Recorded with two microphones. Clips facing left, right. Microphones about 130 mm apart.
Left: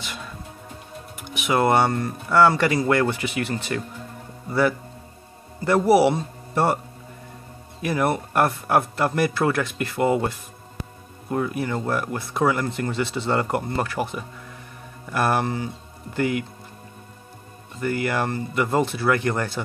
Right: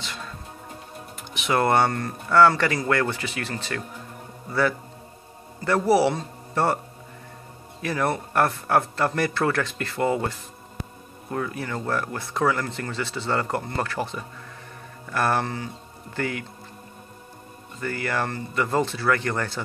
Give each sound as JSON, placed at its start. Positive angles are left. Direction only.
{"t": 1.3, "sound": "a man's voice", "side_deg": 10}
{"t": 7.8, "sound": "speech", "side_deg": 15}
{"t": 11.3, "sound": "speech", "side_deg": 15}
{"t": 17.7, "sound": "speech", "side_deg": 15}